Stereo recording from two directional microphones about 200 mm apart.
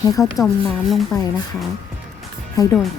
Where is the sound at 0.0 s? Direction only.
15° left (ahead or behind).